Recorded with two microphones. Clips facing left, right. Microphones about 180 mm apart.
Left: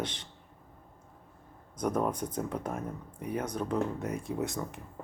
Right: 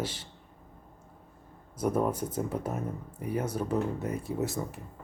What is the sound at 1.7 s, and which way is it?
Speech, 5° right (ahead or behind).